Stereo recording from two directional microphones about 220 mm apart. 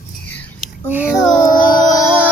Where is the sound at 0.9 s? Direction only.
5° right (ahead or behind).